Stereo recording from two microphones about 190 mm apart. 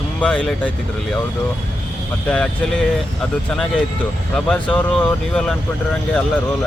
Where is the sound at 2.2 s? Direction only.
5° left (ahead or behind).